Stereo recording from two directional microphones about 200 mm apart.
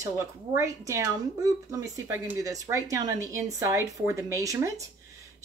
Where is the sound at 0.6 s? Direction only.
15° right (ahead or behind).